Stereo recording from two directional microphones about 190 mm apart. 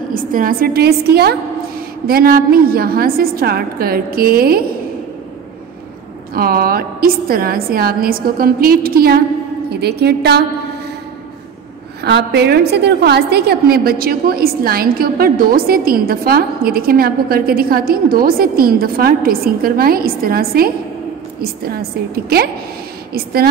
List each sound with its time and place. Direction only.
0.1 s a woman's voice: 45° right (ahead or behind)
6.3 s a woman's voice: 50° right (ahead or behind)
12.0 s a woman's voice: 60° right (ahead or behind)